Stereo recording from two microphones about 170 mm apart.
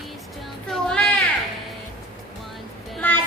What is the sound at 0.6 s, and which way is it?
Music, 5° left (ahead or behind).